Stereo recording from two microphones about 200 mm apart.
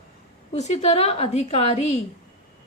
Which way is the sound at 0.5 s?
35° left (ahead or behind).